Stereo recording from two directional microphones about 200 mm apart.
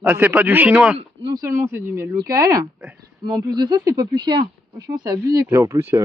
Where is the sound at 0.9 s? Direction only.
20° right (ahead or behind).